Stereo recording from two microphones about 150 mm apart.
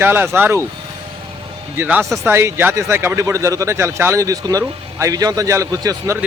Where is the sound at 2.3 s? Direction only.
15° right (ahead or behind).